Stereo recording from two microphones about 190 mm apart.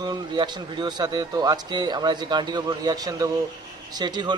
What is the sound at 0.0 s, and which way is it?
A man's voice, 20° right (ahead or behind).